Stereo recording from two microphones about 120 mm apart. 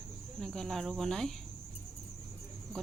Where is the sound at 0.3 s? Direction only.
5° left (ahead or behind).